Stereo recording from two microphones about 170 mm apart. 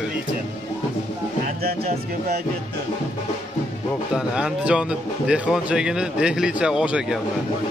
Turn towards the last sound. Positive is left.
turn(degrees=-5)  # may be behind; listen again after turning